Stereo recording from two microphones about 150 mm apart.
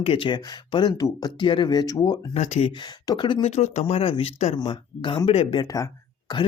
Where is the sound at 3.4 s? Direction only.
50° left (ahead or behind).